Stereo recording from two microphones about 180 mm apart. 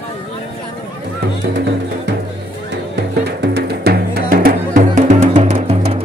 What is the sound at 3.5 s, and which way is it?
Music, 60° right (ahead or behind).